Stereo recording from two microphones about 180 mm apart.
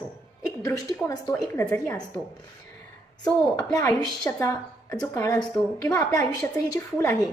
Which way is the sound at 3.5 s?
20° left (ahead or behind).